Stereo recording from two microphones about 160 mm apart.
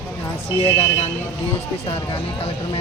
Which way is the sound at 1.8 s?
40° left (ahead or behind).